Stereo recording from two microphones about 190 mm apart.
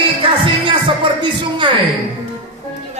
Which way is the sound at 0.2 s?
25° right (ahead or behind).